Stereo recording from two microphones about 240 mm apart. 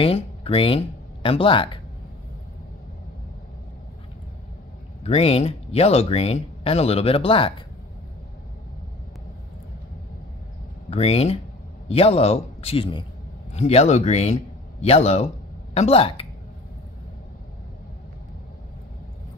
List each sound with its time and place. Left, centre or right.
0.0 s speech: left
5.0 s speech: left
10.9 s a man's voice: left